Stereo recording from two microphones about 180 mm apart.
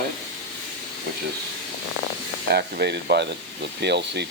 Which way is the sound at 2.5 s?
60° right (ahead or behind).